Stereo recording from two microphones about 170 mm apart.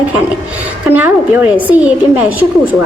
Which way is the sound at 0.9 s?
10° right (ahead or behind).